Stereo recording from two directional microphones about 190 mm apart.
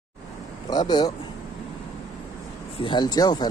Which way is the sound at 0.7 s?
20° left (ahead or behind).